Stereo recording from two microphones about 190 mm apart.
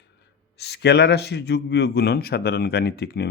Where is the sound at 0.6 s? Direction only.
60° left (ahead or behind).